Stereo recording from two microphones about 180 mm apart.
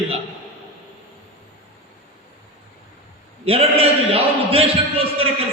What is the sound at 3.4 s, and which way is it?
A man's voice, 35° right (ahead or behind).